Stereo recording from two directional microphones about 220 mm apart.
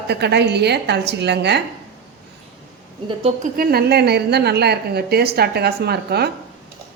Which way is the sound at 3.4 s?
45° right (ahead or behind).